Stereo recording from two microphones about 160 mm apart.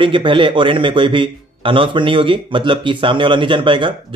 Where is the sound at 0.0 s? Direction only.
30° right (ahead or behind).